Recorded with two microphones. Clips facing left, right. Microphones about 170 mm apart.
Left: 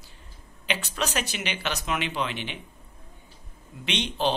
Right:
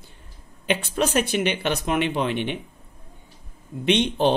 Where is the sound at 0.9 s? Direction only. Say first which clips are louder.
Right 10 dB; 50° right (ahead or behind).